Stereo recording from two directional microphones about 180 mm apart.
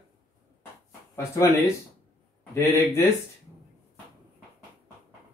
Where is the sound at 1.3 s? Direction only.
15° left (ahead or behind).